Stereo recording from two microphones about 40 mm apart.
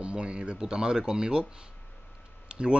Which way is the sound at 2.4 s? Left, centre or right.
Right.